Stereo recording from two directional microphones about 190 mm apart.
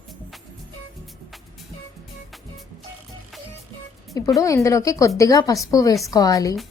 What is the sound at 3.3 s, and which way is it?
Music, centre (ahead or behind).